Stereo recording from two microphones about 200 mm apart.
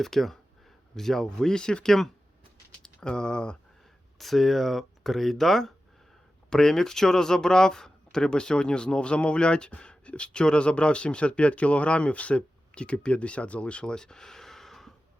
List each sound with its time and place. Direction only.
0.0 s speech: centre (ahead or behind)